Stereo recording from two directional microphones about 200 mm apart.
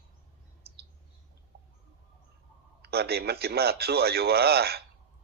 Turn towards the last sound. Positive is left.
turn(degrees=-50)  # may be behind; listen again after turning